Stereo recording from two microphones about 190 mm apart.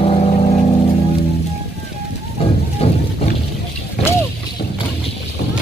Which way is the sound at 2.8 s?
30° left (ahead or behind).